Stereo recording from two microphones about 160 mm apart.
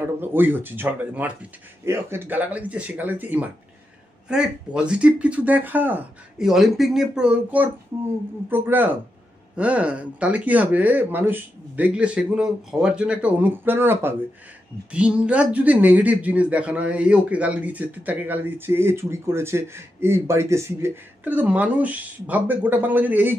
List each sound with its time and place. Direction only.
0.2 s speech: 10° right (ahead or behind)